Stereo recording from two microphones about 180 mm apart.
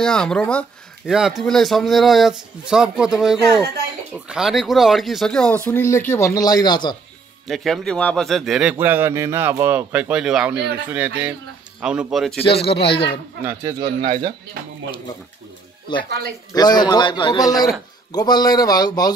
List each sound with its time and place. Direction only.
0.0 s speech: 5° left (ahead or behind)
5.7 s speech: 15° left (ahead or behind)
7.4 s a man's voice: centre (ahead or behind)
12.4 s speech: 30° left (ahead or behind)
13.4 s a man's voice: 15° right (ahead or behind)
14.0 s speech: 50° right (ahead or behind)
15.9 s a man's voice: 25° left (ahead or behind)